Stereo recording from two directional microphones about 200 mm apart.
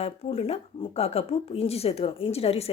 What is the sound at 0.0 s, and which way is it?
A woman's voice, 30° left (ahead or behind).